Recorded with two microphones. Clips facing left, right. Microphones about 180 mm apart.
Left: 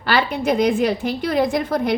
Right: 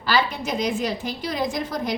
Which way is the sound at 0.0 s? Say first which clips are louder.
Left 4 dB; 60° left (ahead or behind).